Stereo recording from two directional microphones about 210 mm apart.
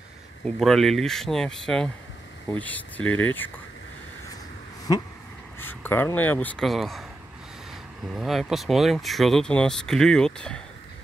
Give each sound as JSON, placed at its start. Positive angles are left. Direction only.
{"t": 0.6, "sound": "speech", "side_deg": 0}
{"t": 4.9, "sound": "a sound", "side_deg": 20}
{"t": 5.6, "sound": "speech", "side_deg": 10}